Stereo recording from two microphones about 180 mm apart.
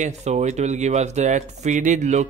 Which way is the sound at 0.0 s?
40° right (ahead or behind).